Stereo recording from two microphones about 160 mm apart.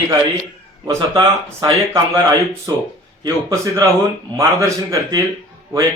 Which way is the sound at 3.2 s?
25° right (ahead or behind).